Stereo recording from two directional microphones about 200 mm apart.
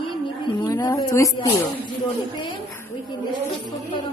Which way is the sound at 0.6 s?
15° left (ahead or behind).